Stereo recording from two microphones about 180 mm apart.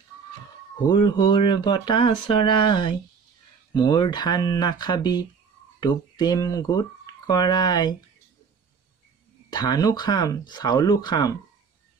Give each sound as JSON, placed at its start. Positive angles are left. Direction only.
{"t": 0.8, "sound": "speech", "side_deg": 25}
{"t": 9.5, "sound": "speech", "side_deg": 25}